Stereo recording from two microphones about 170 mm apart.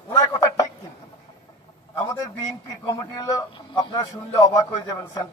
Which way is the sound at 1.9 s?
20° left (ahead or behind).